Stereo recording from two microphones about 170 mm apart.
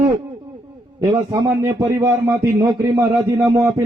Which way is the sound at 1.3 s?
20° right (ahead or behind).